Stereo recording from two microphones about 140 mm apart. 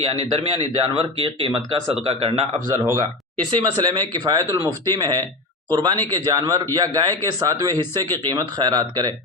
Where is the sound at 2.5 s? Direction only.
45° right (ahead or behind).